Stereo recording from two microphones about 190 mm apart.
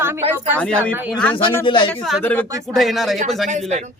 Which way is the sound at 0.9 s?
10° right (ahead or behind).